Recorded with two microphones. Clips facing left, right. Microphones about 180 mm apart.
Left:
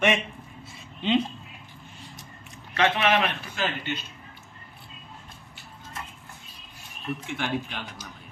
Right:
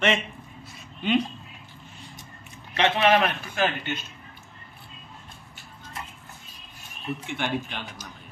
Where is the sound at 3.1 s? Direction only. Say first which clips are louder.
Right 3 dB; 45° right (ahead or behind).